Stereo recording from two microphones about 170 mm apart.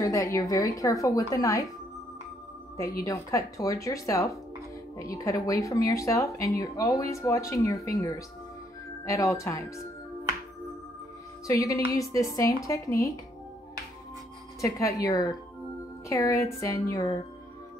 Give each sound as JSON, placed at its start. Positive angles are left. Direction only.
{"t": 0.0, "sound": "speech", "side_deg": 20}
{"t": 3.0, "sound": "speech", "side_deg": 20}
{"t": 11.4, "sound": "speech", "side_deg": 20}
{"t": 14.6, "sound": "speech", "side_deg": 20}